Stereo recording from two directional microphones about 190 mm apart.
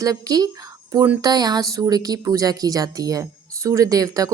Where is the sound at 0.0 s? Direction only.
20° right (ahead or behind).